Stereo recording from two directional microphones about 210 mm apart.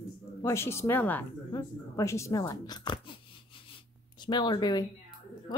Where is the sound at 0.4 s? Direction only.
15° left (ahead or behind).